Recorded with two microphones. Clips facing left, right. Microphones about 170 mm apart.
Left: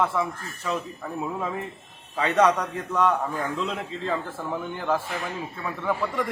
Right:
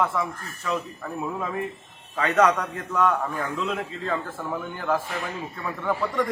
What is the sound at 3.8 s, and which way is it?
Speech, 20° left (ahead or behind).